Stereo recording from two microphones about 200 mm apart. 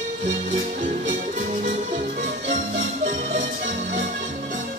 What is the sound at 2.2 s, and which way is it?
Music, 35° right (ahead or behind).